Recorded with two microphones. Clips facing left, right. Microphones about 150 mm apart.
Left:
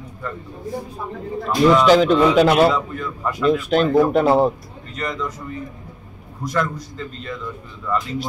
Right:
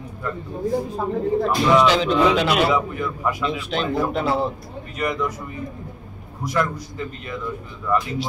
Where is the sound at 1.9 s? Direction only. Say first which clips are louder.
Left 4 dB; 45° left (ahead or behind).